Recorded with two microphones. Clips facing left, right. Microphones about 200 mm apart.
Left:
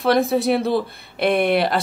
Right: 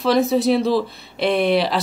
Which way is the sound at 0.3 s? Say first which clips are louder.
Right 2 dB; 55° left (ahead or behind).